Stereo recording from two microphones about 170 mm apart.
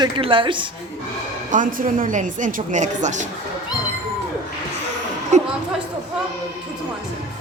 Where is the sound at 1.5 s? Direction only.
50° right (ahead or behind).